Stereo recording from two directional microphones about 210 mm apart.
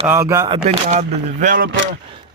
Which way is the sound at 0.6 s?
30° right (ahead or behind).